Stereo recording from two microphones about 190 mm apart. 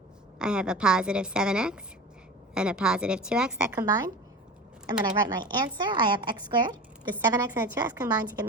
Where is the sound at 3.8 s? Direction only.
20° right (ahead or behind).